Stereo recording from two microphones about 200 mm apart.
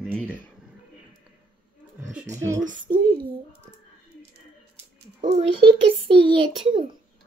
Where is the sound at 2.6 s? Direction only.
40° right (ahead or behind).